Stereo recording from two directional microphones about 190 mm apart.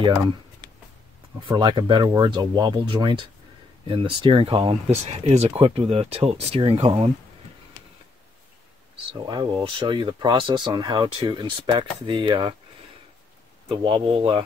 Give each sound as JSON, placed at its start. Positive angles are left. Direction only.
{"t": 0.0, "sound": "speech", "side_deg": -25}
{"t": 9.2, "sound": "speech", "side_deg": -25}
{"t": 13.7, "sound": "speech", "side_deg": -25}